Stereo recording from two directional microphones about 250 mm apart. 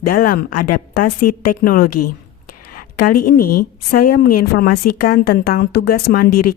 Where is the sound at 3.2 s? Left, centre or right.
Left.